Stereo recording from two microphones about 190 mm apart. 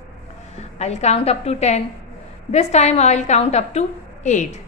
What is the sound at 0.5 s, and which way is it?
A woman's voice, 35° left (ahead or behind).